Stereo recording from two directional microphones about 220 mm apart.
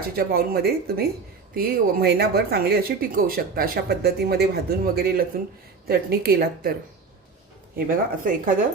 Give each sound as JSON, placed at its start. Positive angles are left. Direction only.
{"t": 0.2, "sound": "speech", "side_deg": -45}
{"t": 7.9, "sound": "speech", "side_deg": -40}